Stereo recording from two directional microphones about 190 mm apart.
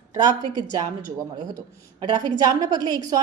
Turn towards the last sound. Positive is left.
turn(degrees=-20)  # may be behind; listen again after turning